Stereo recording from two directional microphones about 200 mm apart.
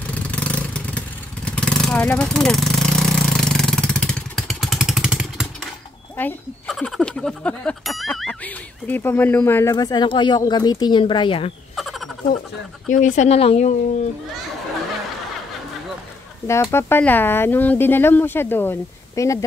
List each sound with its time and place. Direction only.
0.1 s vehicle: 5° left (ahead or behind)
6.1 s speech: 5° left (ahead or behind); by 11.5 s 25° left (ahead or behind)
11.7 s a sound: centre (ahead or behind)
12.9 s speech: 40° left (ahead or behind)
16.7 s speech: 10° left (ahead or behind)